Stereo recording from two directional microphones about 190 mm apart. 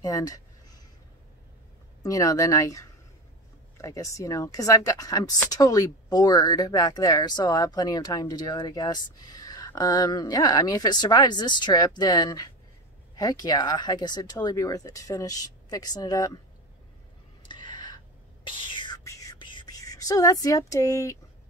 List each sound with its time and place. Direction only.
0.0 s a sound: 20° left (ahead or behind)
2.0 s speech: 15° left (ahead or behind)
17.4 s whispering: 25° left (ahead or behind)